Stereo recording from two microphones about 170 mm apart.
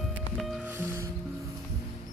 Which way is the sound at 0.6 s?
10° right (ahead or behind).